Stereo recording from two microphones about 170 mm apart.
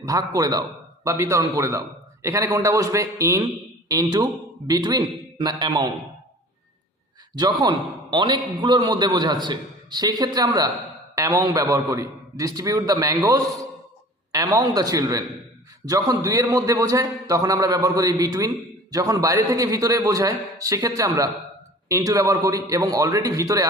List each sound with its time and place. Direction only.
0.0 s a man's voice: 20° right (ahead or behind)
7.3 s a man's voice: 25° right (ahead or behind)